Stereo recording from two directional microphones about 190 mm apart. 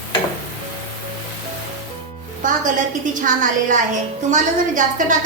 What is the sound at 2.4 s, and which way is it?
A woman's voice, 45° right (ahead or behind).